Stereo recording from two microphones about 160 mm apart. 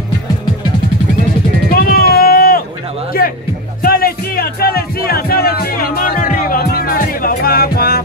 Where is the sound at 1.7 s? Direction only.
70° left (ahead or behind).